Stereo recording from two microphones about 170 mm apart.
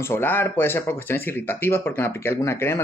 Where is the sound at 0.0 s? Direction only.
15° left (ahead or behind).